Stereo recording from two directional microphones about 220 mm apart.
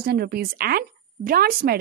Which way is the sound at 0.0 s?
45° right (ahead or behind).